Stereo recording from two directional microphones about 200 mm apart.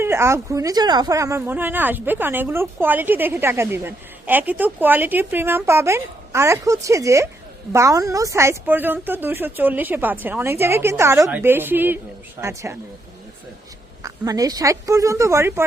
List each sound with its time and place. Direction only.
0.0 s speech: 15° right (ahead or behind)
14.0 s speech: 15° right (ahead or behind)